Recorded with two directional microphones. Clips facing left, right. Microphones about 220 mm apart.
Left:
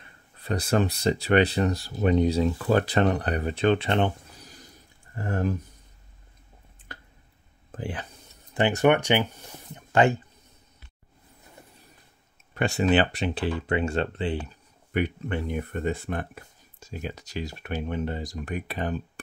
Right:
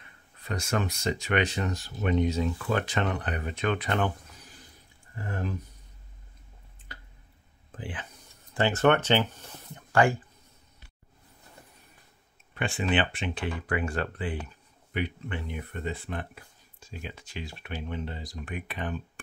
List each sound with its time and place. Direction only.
0.4 s speech: 35° left (ahead or behind)
7.7 s speech: 40° left (ahead or behind)
8.5 s speech: 15° left (ahead or behind)
12.5 s speech: 40° left (ahead or behind)
13.6 s speech: 25° left (ahead or behind)
14.9 s speech: 45° left (ahead or behind)